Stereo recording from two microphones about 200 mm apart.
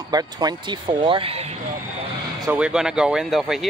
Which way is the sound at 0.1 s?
20° right (ahead or behind).